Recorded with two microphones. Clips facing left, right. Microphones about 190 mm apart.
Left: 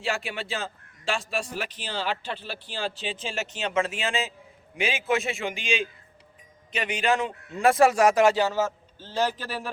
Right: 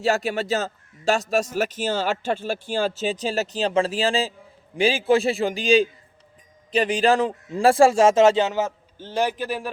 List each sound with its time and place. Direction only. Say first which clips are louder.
0.0 s a man's voice: right 8 dB; 40° right (ahead or behind); by 9.6 s 15° right (ahead or behind)